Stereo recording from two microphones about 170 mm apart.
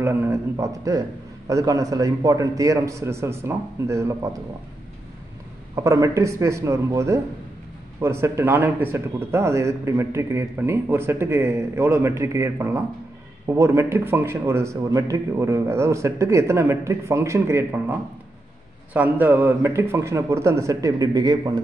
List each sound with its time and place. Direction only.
0.0 s a man's voice: 15° right (ahead or behind)
5.9 s speech: 20° right (ahead or behind)
18.9 s speech: 10° right (ahead or behind)